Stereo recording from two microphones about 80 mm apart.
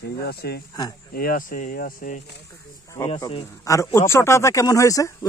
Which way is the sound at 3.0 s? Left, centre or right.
Left.